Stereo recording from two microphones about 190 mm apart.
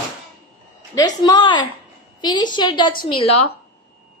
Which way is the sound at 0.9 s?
20° left (ahead or behind).